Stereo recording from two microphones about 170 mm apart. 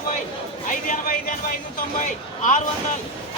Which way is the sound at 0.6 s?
55° left (ahead or behind).